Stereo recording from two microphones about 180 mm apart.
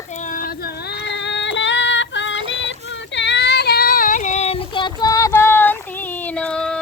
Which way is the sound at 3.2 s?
75° left (ahead or behind).